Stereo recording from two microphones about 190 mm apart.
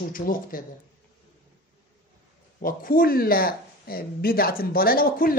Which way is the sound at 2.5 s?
45° left (ahead or behind).